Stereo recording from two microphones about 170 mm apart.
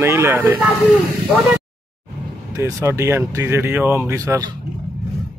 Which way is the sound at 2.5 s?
15° right (ahead or behind).